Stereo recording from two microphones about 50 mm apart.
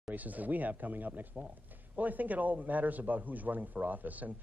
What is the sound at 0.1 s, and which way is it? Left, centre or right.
A man's voice, right.